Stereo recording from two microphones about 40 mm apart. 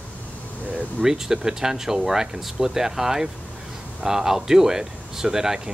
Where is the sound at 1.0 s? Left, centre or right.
Centre.